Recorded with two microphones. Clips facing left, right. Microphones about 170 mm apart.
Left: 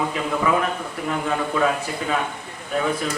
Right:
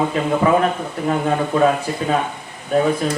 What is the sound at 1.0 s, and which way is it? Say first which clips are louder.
A man's voice: right 5 dB; 35° right (ahead or behind).